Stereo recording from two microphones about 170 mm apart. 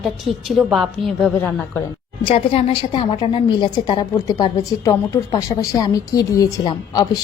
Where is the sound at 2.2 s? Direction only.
30° left (ahead or behind).